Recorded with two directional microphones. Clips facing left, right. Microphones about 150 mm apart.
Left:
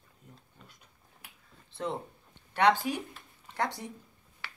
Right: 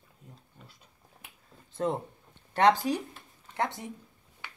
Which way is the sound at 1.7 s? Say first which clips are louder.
Right 5 dB; 45° right (ahead or behind).